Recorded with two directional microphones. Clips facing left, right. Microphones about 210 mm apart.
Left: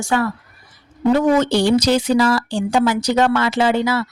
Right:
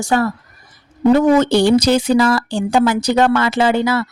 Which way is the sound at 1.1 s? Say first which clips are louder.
Right 3 dB; 55° right (ahead or behind).